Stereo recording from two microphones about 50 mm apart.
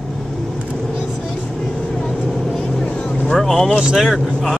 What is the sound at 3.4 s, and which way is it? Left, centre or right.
Vehicle, centre.